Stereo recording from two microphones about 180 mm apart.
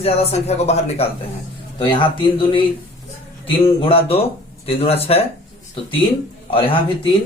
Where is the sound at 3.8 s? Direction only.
30° left (ahead or behind).